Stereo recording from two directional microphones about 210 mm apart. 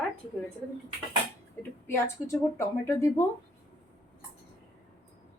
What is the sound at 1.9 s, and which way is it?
Speech, 15° left (ahead or behind).